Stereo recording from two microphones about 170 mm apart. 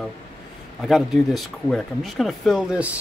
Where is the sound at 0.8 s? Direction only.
Centre (ahead or behind).